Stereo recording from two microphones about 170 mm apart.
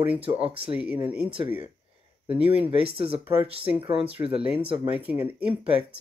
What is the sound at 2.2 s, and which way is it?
Speech, 10° right (ahead or behind).